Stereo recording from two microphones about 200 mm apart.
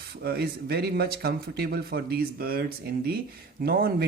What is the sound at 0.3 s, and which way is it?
Speech, 50° right (ahead or behind).